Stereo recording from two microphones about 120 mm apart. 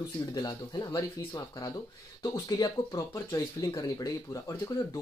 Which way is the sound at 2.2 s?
30° left (ahead or behind).